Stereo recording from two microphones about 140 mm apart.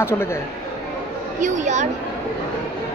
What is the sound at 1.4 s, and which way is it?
Speech, 60° right (ahead or behind).